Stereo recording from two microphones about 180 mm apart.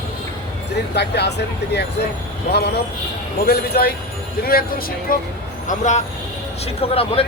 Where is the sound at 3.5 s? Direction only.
60° left (ahead or behind).